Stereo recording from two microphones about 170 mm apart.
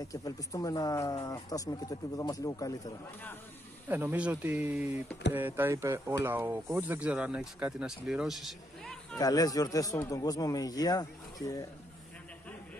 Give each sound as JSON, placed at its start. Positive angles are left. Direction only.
{"t": 0.1, "sound": "speech", "side_deg": 20}
{"t": 3.9, "sound": "speech", "side_deg": -10}
{"t": 9.2, "sound": "speech", "side_deg": 20}